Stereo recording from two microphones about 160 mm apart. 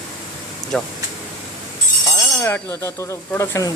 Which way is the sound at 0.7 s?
5° left (ahead or behind).